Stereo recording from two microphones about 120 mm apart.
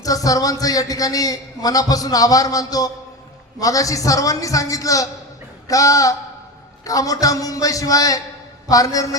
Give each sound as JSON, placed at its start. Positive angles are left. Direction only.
{"t": 0.0, "sound": "a man's voice", "side_deg": 30}